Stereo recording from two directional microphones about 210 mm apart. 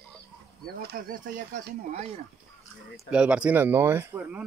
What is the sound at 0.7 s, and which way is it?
Speech, 45° right (ahead or behind).